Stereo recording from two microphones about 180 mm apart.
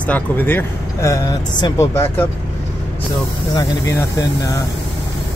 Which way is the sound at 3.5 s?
15° left (ahead or behind).